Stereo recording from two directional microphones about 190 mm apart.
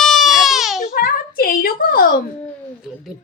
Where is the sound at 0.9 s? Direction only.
50° left (ahead or behind).